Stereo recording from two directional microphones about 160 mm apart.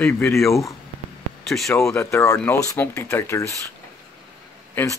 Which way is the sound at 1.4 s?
Centre (ahead or behind).